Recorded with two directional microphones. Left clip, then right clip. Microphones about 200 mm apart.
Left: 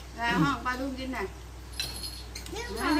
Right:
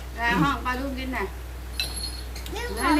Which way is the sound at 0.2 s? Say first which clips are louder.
Right 4 dB; centre (ahead or behind).